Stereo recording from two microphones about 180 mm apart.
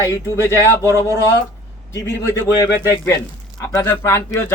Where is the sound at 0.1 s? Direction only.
15° left (ahead or behind).